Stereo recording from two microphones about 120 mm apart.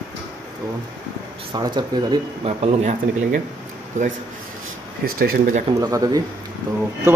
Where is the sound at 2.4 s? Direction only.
70° right (ahead or behind).